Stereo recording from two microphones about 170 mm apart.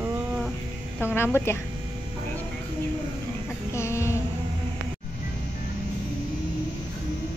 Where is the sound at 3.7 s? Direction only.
15° left (ahead or behind).